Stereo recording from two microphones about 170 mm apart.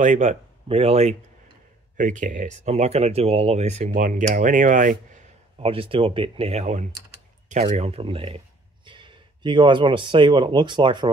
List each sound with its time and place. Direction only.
0.0 s speech: 45° right (ahead or behind)
2.0 s speech: 50° right (ahead or behind)
5.6 s speech: 30° right (ahead or behind)